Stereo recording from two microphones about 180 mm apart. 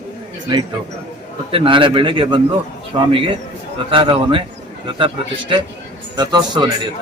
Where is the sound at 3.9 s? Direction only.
30° right (ahead or behind).